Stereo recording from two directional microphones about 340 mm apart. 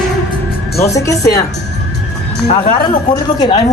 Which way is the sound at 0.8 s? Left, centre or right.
Centre.